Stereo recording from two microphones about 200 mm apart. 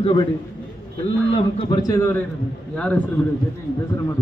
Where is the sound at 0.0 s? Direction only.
25° left (ahead or behind).